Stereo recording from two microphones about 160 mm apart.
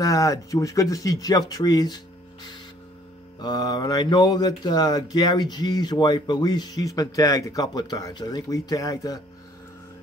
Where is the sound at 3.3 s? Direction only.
25° left (ahead or behind).